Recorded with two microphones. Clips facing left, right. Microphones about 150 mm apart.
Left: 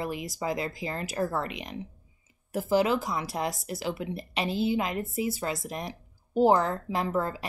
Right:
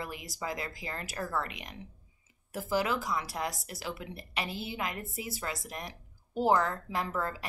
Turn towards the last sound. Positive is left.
turn(degrees=25)  # may be behind; listen again after turning